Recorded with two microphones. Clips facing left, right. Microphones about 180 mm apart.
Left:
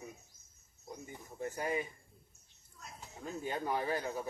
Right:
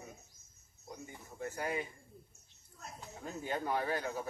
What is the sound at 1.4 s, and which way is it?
Speech, 15° left (ahead or behind).